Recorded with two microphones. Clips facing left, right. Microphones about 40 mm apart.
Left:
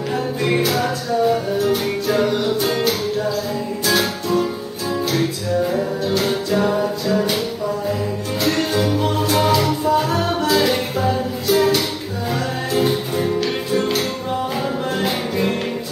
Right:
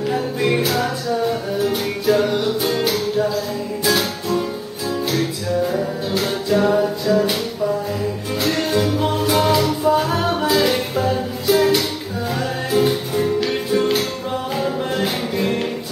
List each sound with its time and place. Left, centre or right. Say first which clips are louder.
0.1 s music: left 1 dB; centre
3.8 s music: even; centre